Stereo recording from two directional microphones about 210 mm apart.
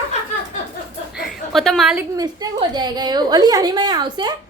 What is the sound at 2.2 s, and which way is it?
A woman's voice, 20° right (ahead or behind).